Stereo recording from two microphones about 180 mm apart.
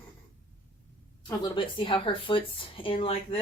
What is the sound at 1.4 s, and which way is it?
A woman's voice, 25° left (ahead or behind).